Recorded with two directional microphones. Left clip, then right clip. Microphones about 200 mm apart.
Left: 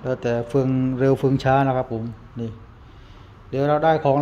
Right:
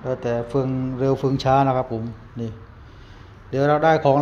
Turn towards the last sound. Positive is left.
turn(degrees=0)  # may be behind; listen again after turning